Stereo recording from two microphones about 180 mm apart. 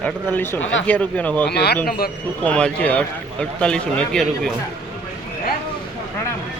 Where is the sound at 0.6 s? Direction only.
90° left.